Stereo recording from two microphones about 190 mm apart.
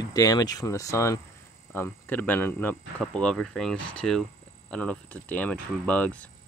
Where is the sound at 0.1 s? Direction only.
20° left (ahead or behind).